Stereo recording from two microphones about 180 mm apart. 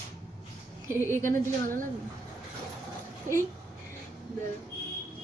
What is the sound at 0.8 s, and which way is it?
Speech, 15° right (ahead or behind).